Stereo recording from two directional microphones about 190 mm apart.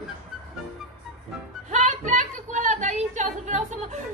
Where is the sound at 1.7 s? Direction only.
40° right (ahead or behind).